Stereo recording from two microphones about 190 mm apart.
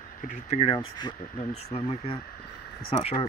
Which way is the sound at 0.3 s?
35° left (ahead or behind).